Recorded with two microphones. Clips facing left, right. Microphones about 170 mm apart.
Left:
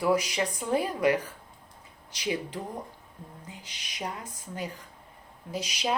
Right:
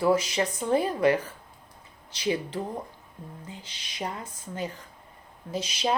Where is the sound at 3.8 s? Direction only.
30° right (ahead or behind).